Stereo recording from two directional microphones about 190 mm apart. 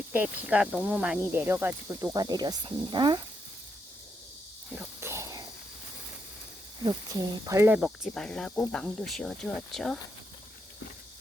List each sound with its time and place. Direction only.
0.1 s speech: 10° right (ahead or behind); by 3.2 s 25° right (ahead or behind)
4.7 s a sound: 10° right (ahead or behind)
6.8 s speech: 20° right (ahead or behind)
7.8 s speech: centre (ahead or behind)